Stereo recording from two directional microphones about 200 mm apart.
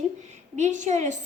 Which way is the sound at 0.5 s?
35° right (ahead or behind).